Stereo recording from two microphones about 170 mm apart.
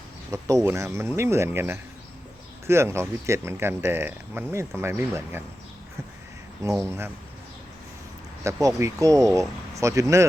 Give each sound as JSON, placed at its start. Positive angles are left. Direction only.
{"t": 0.3, "sound": "speech", "side_deg": -20}
{"t": 6.6, "sound": "speech", "side_deg": -20}
{"t": 8.6, "sound": "speech", "side_deg": -20}